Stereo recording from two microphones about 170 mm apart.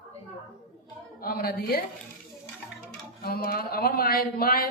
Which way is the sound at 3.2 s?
65° left (ahead or behind).